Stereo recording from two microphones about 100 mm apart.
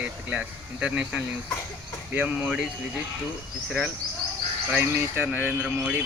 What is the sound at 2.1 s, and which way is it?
Speech, 15° right (ahead or behind).